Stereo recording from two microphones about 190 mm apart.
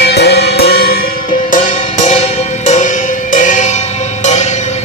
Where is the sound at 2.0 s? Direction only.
35° left (ahead or behind).